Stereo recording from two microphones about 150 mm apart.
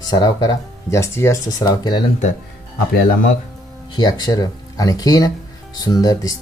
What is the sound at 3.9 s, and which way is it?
Speech, 25° left (ahead or behind).